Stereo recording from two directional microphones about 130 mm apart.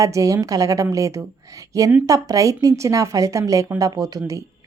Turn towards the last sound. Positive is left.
turn(degrees=-25)  # may be behind; listen again after turning